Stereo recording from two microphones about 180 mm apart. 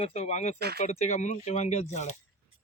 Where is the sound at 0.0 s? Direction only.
35° left (ahead or behind).